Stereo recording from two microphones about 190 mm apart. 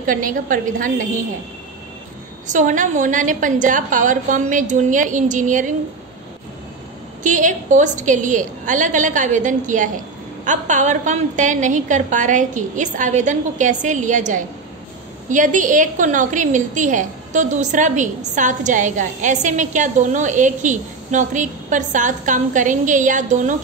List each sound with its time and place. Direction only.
0.0 s a woman's voice: 45° right (ahead or behind)
2.4 s a woman's voice: 40° right (ahead or behind)
7.2 s a woman's voice: 40° right (ahead or behind)